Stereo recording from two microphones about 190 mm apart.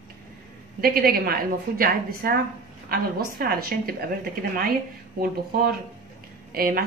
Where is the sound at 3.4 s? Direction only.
50° right (ahead or behind).